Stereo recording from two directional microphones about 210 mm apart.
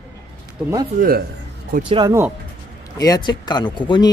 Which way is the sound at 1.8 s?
25° right (ahead or behind).